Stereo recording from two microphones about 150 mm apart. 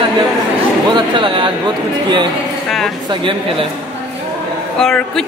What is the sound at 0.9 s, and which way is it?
Speech, 30° right (ahead or behind).